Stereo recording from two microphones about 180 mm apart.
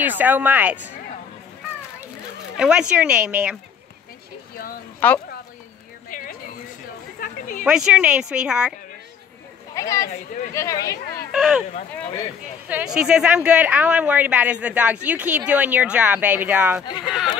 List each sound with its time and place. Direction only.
0.0 s speech: 10° right (ahead or behind)
2.5 s speech: 5° right (ahead or behind)
5.0 s speech: 10° left (ahead or behind)
6.0 s a sound: 50° left (ahead or behind)
7.2 s speech: 50° left (ahead or behind)
7.6 s speech: 5° right (ahead or behind)
9.8 s speech: 15° left (ahead or behind)
11.3 s speech: 5° right (ahead or behind)
12.6 s speech: 5° right (ahead or behind)